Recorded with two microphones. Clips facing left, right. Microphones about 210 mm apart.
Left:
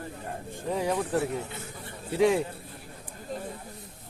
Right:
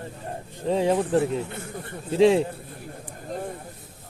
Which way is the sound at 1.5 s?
55° right (ahead or behind).